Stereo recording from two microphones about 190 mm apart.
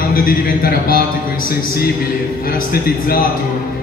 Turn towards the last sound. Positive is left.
turn(degrees=50)  # may be behind; listen again after turning